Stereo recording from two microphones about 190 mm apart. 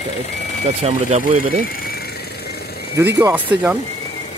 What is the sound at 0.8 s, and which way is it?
Speech, 35° right (ahead or behind).